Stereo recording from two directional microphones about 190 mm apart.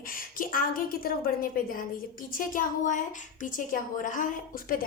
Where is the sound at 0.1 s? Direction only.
45° left (ahead or behind).